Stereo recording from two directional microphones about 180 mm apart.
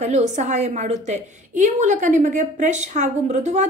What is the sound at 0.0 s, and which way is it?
A woman's voice, 40° right (ahead or behind).